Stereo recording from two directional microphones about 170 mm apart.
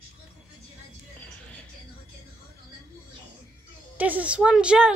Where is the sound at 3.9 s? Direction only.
10° right (ahead or behind).